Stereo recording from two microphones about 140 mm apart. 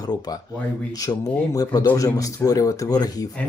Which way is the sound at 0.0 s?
30° left (ahead or behind).